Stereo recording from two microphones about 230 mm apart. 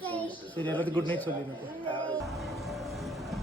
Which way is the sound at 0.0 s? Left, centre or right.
Centre.